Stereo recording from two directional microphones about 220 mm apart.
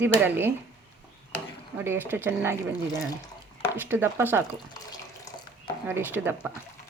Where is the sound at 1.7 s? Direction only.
10° right (ahead or behind).